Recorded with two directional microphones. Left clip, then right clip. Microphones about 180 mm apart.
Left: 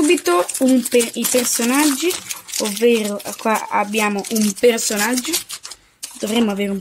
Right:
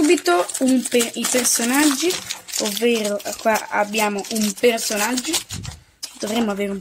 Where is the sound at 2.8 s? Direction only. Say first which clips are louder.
Left 4 dB; 35° left (ahead or behind).